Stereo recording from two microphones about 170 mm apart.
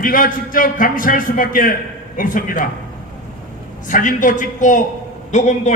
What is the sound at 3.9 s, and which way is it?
A man's voice, 50° left (ahead or behind).